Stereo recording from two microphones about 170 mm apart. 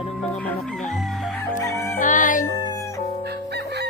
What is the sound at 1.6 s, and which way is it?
Music, 20° left (ahead or behind).